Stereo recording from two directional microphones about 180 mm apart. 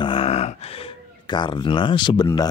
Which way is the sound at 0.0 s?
30° left (ahead or behind).